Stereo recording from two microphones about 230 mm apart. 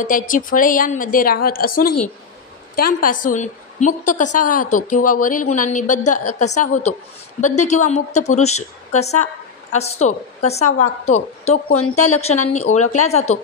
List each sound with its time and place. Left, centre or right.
0.0 s a woman's voice: left
11.7 s a woman's voice: left
12.0 s a woman's voice: left